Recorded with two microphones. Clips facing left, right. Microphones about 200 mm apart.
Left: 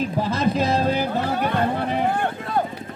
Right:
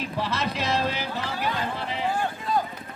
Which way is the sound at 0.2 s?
50° left (ahead or behind).